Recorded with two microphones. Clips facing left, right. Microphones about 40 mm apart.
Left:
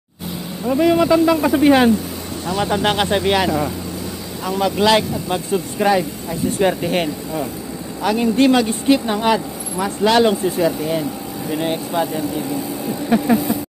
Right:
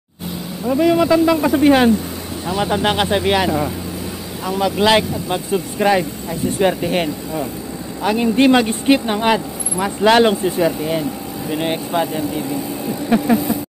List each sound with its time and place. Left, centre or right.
0.7 s speech: centre
6.6 s speech: centre
8.0 s speech: centre
11.5 s speech: right
12.8 s speech: centre